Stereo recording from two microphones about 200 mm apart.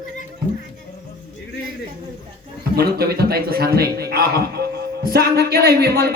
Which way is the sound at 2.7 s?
50° right (ahead or behind).